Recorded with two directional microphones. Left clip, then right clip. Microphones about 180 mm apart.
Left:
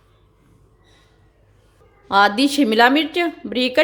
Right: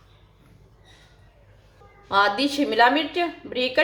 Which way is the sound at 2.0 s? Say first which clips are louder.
Left 5 dB; 60° left (ahead or behind).